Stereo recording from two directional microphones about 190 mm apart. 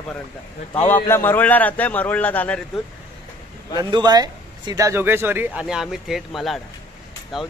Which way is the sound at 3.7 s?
20° right (ahead or behind).